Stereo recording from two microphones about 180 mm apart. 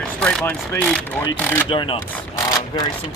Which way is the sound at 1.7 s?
30° left (ahead or behind).